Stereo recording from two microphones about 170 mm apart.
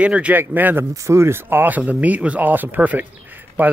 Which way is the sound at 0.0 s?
5° right (ahead or behind).